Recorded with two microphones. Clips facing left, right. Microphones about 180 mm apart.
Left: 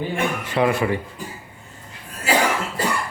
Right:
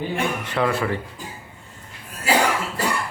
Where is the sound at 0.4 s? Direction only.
15° left (ahead or behind).